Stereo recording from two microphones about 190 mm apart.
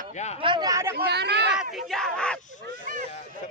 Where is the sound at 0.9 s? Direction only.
60° right (ahead or behind).